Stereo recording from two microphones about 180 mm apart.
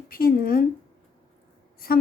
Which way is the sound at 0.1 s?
55° left (ahead or behind).